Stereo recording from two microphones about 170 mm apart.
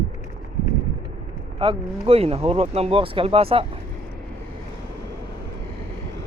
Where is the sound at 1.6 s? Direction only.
35° right (ahead or behind).